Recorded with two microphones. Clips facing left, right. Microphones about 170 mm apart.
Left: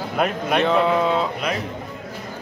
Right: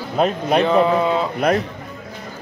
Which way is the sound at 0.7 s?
Centre (ahead or behind).